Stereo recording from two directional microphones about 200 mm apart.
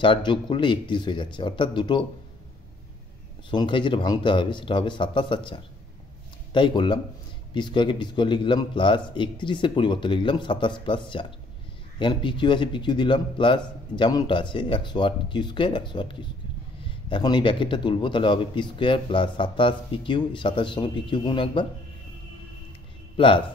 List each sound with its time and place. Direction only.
0.0 s a man's voice: 25° left (ahead or behind)
3.4 s a man's voice: 25° left (ahead or behind)
23.1 s a man's voice: 25° left (ahead or behind)